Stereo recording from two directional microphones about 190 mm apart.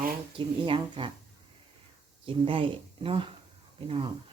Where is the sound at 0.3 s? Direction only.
25° right (ahead or behind).